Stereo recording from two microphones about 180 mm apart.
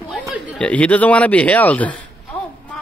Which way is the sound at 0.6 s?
5° left (ahead or behind).